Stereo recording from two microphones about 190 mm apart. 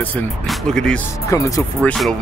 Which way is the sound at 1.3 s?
15° left (ahead or behind).